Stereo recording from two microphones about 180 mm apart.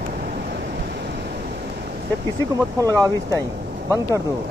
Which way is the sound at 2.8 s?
20° right (ahead or behind).